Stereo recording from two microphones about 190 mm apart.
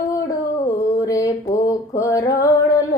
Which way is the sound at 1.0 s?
15° left (ahead or behind).